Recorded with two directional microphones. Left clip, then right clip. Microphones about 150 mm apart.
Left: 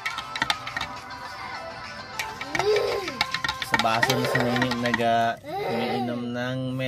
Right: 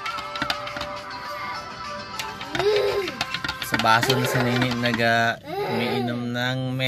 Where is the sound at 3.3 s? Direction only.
20° left (ahead or behind).